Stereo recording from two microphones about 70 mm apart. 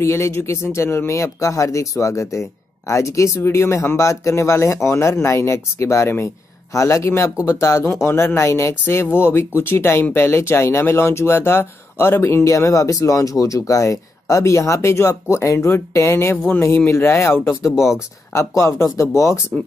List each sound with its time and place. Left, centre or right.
0.0 s speech: left
17.7 s speech: centre
18.3 s speech: left